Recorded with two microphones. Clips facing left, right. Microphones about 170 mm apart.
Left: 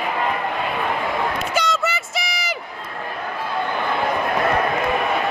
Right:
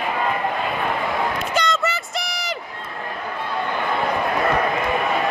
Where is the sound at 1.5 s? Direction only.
Centre (ahead or behind).